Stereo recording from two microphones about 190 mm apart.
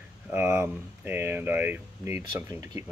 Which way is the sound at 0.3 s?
10° right (ahead or behind).